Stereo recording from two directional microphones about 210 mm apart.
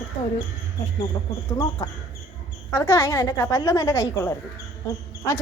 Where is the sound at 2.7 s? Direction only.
15° left (ahead or behind).